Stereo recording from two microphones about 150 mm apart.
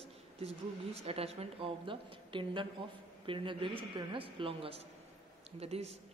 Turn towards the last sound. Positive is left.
turn(degrees=-45)  # may be behind; listen again after turning